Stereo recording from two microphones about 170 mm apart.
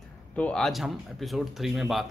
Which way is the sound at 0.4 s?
5° left (ahead or behind).